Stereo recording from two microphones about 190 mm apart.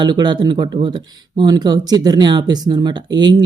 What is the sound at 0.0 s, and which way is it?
Speech, 25° right (ahead or behind).